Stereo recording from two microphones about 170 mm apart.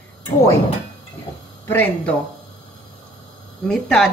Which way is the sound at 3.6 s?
5° left (ahead or behind).